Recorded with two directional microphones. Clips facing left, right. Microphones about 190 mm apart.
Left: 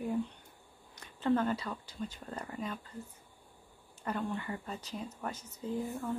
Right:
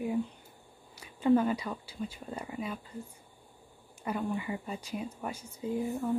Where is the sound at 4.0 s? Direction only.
10° right (ahead or behind).